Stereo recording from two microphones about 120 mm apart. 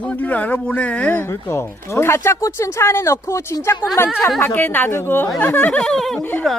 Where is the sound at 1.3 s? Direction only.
20° left (ahead or behind).